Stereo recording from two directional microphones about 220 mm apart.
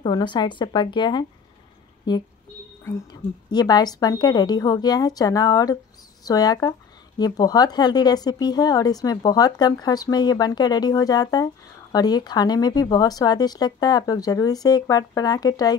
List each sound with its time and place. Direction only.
0.0 s speech: 20° left (ahead or behind)